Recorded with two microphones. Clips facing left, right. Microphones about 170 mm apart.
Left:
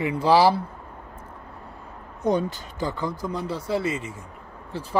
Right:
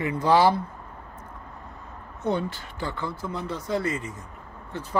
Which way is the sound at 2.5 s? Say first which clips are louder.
Left 4 dB; 15° left (ahead or behind).